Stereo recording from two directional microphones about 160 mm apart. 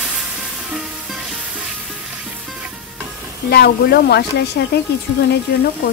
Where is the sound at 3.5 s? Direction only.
75° left (ahead or behind).